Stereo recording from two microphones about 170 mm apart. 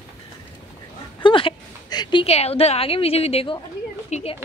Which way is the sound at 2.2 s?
35° left (ahead or behind).